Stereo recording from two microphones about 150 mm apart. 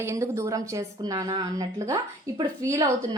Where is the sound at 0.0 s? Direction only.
20° right (ahead or behind).